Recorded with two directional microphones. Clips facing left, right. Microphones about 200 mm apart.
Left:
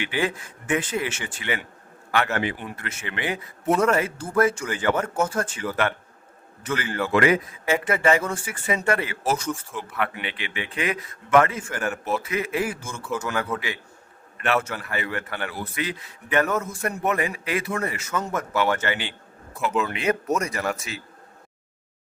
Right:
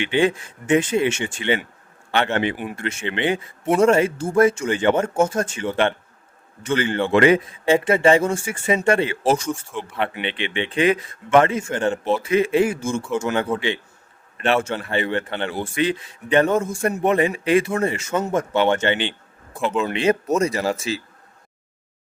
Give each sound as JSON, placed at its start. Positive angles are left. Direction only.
{"t": 0.0, "sound": "a man's voice", "side_deg": -25}